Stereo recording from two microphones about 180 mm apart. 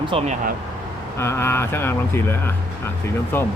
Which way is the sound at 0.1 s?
35° right (ahead or behind).